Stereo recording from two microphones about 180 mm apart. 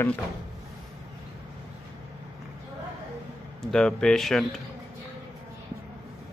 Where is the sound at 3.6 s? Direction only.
5° left (ahead or behind).